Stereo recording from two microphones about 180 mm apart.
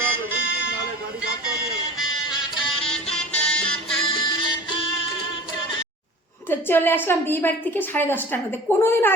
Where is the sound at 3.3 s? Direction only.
10° left (ahead or behind).